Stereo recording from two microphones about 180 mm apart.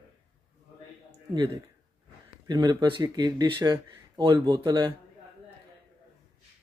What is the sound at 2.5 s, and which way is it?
Speech, 25° right (ahead or behind).